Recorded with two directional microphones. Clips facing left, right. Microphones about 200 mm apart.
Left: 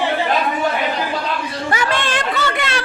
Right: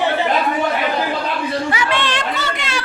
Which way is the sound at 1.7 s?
45° left (ahead or behind).